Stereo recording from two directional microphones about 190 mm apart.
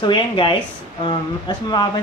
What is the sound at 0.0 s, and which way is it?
Speech, 25° left (ahead or behind).